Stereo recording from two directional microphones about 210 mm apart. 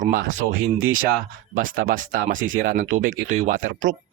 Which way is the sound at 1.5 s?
40° right (ahead or behind).